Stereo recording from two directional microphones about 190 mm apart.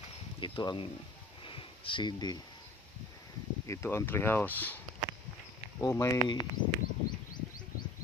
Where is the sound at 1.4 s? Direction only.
25° left (ahead or behind).